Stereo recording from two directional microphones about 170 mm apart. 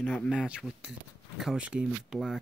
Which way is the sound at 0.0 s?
5° left (ahead or behind).